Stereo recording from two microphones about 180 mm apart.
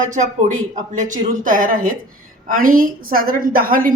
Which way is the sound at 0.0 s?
45° right (ahead or behind).